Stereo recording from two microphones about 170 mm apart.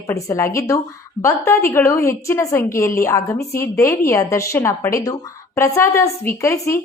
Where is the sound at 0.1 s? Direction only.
15° left (ahead or behind).